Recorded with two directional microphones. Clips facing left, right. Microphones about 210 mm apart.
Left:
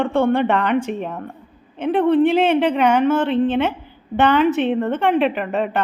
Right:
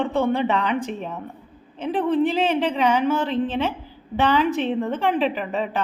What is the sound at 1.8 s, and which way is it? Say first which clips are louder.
A woman's voice: left 5 dB; 60° left (ahead or behind).